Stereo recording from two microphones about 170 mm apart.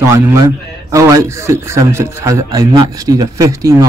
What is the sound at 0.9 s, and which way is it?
A man's voice, 15° right (ahead or behind).